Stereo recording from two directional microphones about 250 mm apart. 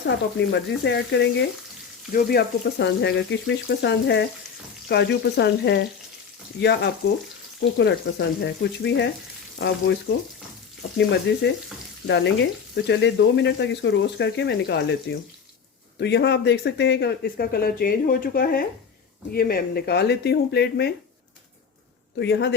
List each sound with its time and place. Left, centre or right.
0.3 s frying: left
6.6 s speech: left
7.6 s frying: left
10.9 s frying: left
16.0 s speech: left
22.2 s frying: left